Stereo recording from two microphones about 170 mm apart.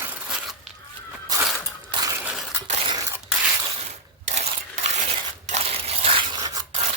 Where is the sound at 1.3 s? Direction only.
20° right (ahead or behind).